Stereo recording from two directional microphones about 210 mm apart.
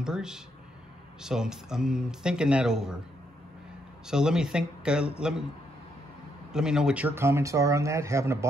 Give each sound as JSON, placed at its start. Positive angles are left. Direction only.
{"t": 0.0, "sound": "speech", "side_deg": -5}
{"t": 4.1, "sound": "speech", "side_deg": -5}
{"t": 6.5, "sound": "speech", "side_deg": -5}